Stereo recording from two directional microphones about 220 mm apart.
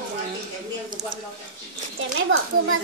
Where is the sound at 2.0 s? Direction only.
60° right (ahead or behind).